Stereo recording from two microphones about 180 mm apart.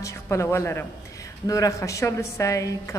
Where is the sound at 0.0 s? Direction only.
15° left (ahead or behind).